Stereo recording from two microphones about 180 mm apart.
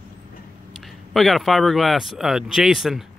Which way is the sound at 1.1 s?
Centre (ahead or behind).